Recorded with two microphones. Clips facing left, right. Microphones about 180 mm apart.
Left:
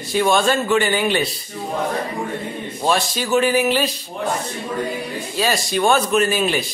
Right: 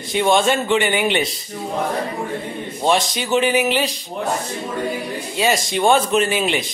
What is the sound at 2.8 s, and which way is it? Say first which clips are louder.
Speech: right 1 dB; 20° right (ahead or behind).